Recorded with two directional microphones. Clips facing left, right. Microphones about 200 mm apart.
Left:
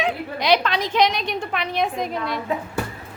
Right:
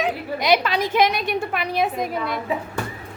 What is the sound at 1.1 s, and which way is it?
Speech, 50° right (ahead or behind).